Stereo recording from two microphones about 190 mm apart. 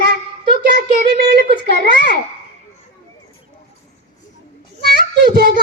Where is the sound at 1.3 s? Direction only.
55° right (ahead or behind).